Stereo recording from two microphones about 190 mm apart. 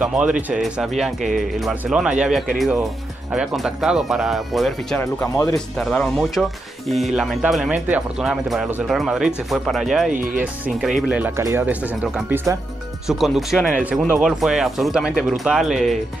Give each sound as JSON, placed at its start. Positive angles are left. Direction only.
{"t": 0.0, "sound": "speech", "side_deg": -5}
{"t": 5.0, "sound": "speech", "side_deg": 15}
{"t": 5.8, "sound": "speech", "side_deg": 0}